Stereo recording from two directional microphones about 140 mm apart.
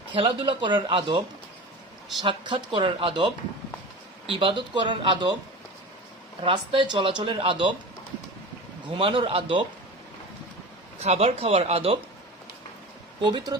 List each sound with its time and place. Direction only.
0.1 s speech: 35° right (ahead or behind)
2.2 s speech: 35° right (ahead or behind)
6.4 s speech: 35° right (ahead or behind)
9.0 s speech: 40° right (ahead or behind)
11.0 s speech: 50° right (ahead or behind)
13.2 s speech: 30° right (ahead or behind)